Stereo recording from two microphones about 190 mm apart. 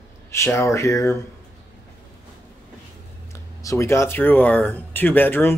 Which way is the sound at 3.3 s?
15° left (ahead or behind).